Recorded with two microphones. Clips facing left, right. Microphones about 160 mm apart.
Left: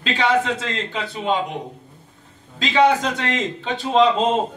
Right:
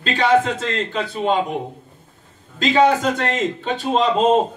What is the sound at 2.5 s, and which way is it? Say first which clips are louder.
A man's voice: right 1 dB; 50° right (ahead or behind).